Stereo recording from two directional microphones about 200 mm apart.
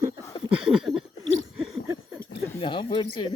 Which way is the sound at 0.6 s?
5° right (ahead or behind).